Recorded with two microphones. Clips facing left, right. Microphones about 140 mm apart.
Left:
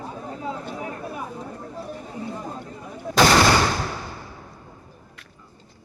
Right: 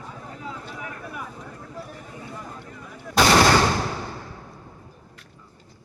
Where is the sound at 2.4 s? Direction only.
25° left (ahead or behind).